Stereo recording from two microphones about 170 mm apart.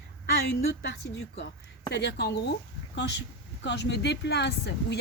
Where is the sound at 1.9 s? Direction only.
85° left.